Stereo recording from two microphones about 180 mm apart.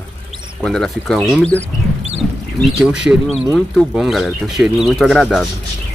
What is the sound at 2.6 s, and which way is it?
Speech, 5° right (ahead or behind).